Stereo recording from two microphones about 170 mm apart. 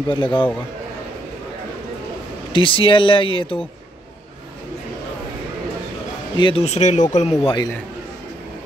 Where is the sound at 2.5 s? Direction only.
30° left (ahead or behind).